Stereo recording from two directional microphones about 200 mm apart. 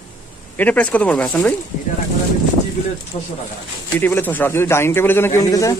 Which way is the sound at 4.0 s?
10° left (ahead or behind).